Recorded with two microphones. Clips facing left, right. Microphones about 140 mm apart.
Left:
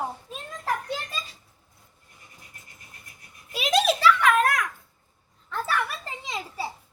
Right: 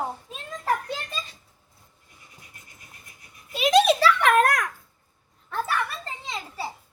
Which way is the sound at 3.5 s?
Centre (ahead or behind).